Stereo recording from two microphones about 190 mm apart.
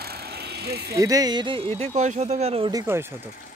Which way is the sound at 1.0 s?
20° right (ahead or behind).